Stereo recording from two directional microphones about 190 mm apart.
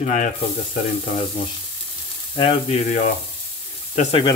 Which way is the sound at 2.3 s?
30° left (ahead or behind).